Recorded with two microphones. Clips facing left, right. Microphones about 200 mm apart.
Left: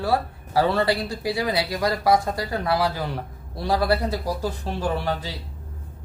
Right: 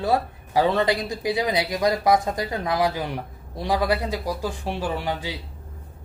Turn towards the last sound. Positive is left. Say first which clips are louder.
# left 2 dB
turn(degrees=-15)  # may be behind; listen again after turning